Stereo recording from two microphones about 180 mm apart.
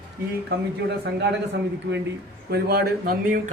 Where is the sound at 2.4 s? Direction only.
60° right (ahead or behind).